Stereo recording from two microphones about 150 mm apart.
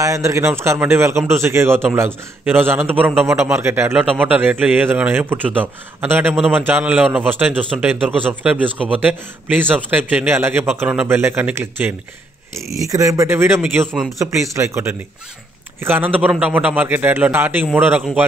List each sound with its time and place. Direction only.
0.0 s a man's voice: 20° right (ahead or behind)